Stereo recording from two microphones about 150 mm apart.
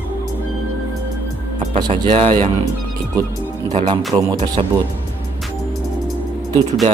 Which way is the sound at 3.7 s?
40° right (ahead or behind).